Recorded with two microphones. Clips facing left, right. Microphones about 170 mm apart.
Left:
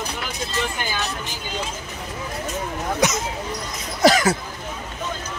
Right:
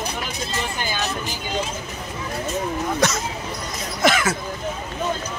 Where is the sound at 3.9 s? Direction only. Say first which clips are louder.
Left 4 dB; 40° left (ahead or behind).